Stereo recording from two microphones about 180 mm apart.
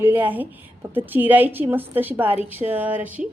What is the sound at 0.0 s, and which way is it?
A woman's voice, 10° right (ahead or behind).